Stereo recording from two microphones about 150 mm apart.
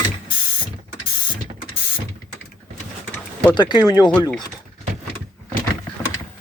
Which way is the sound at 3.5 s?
30° left (ahead or behind).